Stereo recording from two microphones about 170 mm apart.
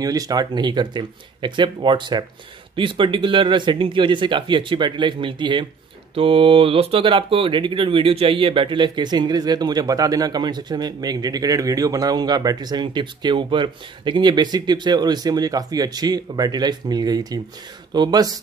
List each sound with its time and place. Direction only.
0.0 s speech: 20° right (ahead or behind)